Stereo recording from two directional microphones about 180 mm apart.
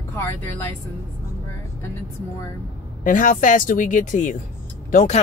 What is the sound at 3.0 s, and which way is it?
Speech, 45° left (ahead or behind).